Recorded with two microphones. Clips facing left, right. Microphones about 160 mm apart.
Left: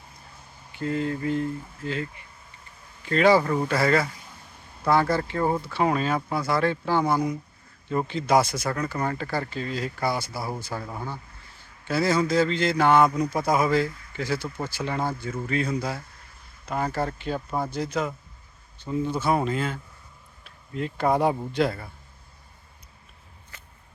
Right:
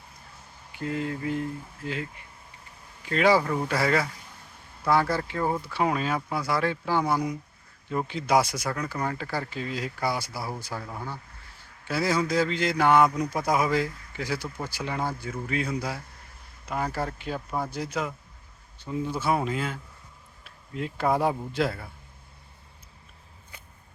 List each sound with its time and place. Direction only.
0.7 s speech: 10° right (ahead or behind)
3.0 s speech: 10° right (ahead or behind)
10.8 s speech: 15° left (ahead or behind)
11.9 s speech: 10° right (ahead or behind)
13.1 s speech: 10° left (ahead or behind)
13.4 s speech: 10° right (ahead or behind)